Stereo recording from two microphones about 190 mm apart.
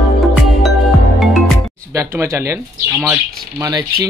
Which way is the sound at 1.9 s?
15° right (ahead or behind).